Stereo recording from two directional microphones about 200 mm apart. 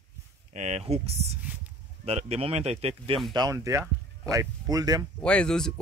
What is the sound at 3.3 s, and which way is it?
Speech, 20° right (ahead or behind).